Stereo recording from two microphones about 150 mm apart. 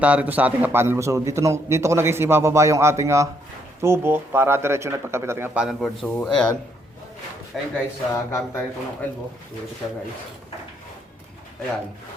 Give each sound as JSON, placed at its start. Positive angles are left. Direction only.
{"t": 0.0, "sound": "a man's voice", "side_deg": -10}
{"t": 5.6, "sound": "a man's voice", "side_deg": 0}
{"t": 7.5, "sound": "a man's voice", "side_deg": 0}
{"t": 8.1, "sound": "speech", "side_deg": 20}